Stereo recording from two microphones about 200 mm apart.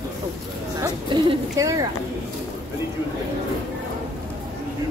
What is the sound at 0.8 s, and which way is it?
Speech, 20° right (ahead or behind).